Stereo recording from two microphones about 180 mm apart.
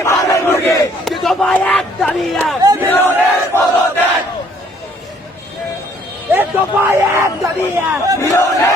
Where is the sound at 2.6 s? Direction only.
20° right (ahead or behind).